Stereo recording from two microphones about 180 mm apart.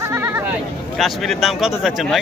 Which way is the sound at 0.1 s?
15° right (ahead or behind).